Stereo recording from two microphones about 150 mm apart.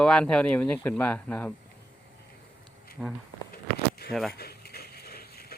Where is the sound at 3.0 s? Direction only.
5° right (ahead or behind).